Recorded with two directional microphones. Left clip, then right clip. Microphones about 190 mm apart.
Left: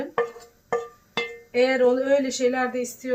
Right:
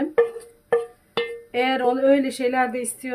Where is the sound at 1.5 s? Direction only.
45° right (ahead or behind).